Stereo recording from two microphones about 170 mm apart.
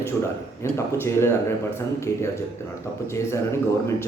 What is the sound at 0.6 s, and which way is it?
Speech, 15° left (ahead or behind).